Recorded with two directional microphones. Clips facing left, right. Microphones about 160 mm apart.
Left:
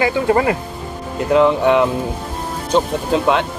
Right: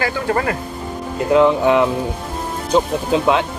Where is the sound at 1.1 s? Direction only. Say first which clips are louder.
Even; centre (ahead or behind).